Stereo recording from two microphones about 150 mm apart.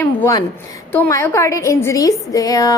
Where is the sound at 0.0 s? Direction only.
15° left (ahead or behind).